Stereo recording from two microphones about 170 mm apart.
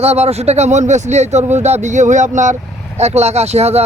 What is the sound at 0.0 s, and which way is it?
Speech, 40° right (ahead or behind).